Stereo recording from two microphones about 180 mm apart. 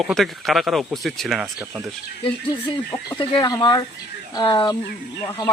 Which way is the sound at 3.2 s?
25° left (ahead or behind).